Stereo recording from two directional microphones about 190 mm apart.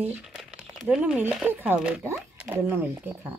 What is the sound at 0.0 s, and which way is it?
Speech, centre (ahead or behind).